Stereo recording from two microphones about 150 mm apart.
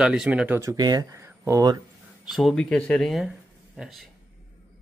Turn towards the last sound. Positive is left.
turn(degrees=0)  # may be behind; listen again after turning